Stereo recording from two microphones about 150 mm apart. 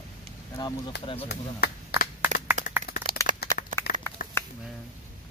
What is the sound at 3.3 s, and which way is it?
Crack, 60° right (ahead or behind).